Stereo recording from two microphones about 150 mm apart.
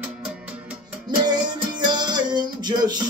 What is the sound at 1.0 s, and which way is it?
Music, 30° right (ahead or behind).